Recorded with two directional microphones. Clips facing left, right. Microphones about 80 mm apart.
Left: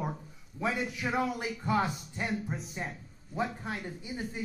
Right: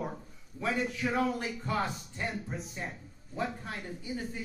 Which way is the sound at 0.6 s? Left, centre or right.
Centre.